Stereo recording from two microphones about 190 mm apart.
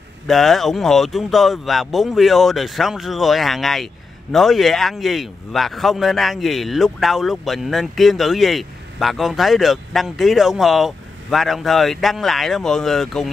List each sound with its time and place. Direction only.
0.3 s speech: centre (ahead or behind)